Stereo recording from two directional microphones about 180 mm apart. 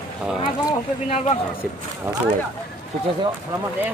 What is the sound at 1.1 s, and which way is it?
Speech, 35° left (ahead or behind).